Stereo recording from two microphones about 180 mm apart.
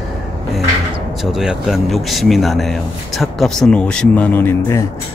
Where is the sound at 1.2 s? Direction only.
Centre (ahead or behind).